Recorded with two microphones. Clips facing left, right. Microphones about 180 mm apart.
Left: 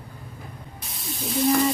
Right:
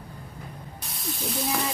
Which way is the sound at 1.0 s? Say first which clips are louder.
Left 7 dB; centre (ahead or behind).